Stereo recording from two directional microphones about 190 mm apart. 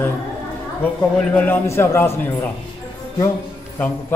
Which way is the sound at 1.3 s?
10° left (ahead or behind).